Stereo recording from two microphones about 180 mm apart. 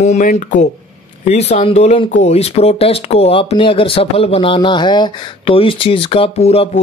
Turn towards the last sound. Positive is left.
turn(degrees=35)  # may be behind; listen again after turning